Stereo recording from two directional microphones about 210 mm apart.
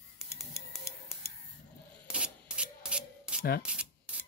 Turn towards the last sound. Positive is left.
turn(degrees=45)  # may be behind; listen again after turning